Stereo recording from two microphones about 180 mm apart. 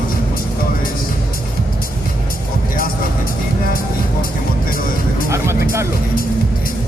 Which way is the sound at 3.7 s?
55° left (ahead or behind).